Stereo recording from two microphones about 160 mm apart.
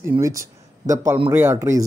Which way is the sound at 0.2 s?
20° right (ahead or behind).